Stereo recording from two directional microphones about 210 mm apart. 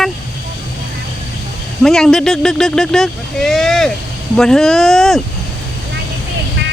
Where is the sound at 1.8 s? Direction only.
Centre (ahead or behind).